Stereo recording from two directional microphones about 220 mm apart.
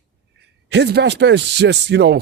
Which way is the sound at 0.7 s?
50° right (ahead or behind).